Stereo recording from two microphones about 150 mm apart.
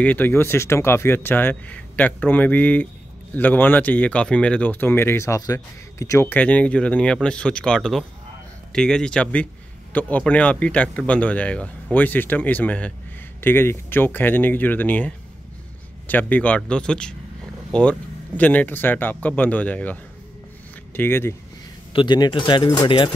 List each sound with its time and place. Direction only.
0.0 s speech: 10° left (ahead or behind)
21.9 s speech: 30° left (ahead or behind)